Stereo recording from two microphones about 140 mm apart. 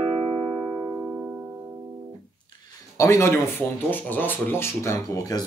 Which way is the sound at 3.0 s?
20° left (ahead or behind).